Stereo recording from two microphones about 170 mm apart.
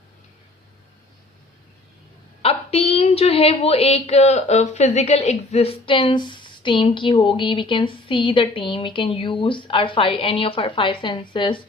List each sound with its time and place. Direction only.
2.4 s a woman's voice: 35° left (ahead or behind)